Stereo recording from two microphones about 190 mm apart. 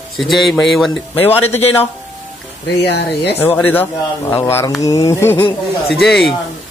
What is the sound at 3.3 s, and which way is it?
Speech, 10° left (ahead or behind).